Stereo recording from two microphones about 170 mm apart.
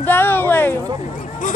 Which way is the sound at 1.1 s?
50° left (ahead or behind).